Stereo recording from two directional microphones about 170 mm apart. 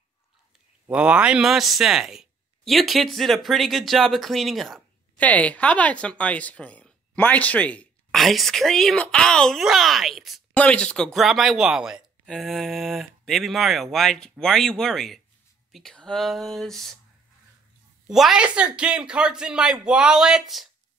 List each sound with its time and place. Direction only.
0.8 s speech: 5° right (ahead or behind)
18.0 s speech: centre (ahead or behind)